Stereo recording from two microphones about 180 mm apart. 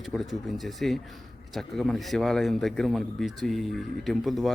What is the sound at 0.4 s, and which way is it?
Speech, centre (ahead or behind).